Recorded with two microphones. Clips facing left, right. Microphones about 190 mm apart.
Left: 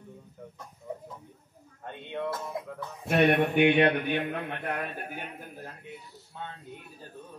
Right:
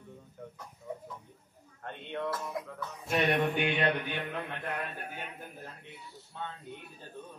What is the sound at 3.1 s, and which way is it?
A man's voice, 60° left (ahead or behind).